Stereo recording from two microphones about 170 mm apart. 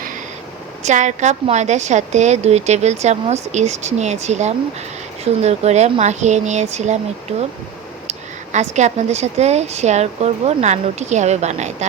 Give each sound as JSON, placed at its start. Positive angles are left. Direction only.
{"t": 0.9, "sound": "speech", "side_deg": -45}
{"t": 8.7, "sound": "speech", "side_deg": -40}